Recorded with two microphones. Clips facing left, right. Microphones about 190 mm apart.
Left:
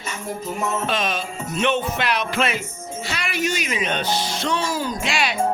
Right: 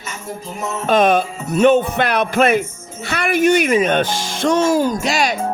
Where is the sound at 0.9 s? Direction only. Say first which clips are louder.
Right 10 dB; 55° right (ahead or behind).